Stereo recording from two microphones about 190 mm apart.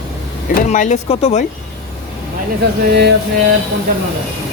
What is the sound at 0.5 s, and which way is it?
Speech, 40° left (ahead or behind).